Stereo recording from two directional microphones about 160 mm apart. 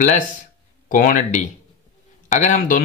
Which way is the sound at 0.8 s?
55° left (ahead or behind).